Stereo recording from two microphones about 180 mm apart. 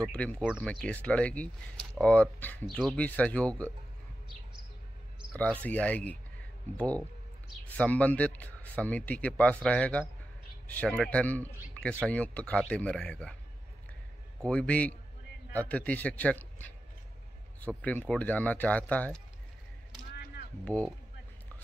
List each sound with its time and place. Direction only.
0.0 s a man's voice: 5° left (ahead or behind)
5.3 s a man's voice: 10° left (ahead or behind)
7.7 s a man's voice: 10° left (ahead or behind)
14.4 s a man's voice: 5° left (ahead or behind)
20.6 s a man's voice: 5° left (ahead or behind)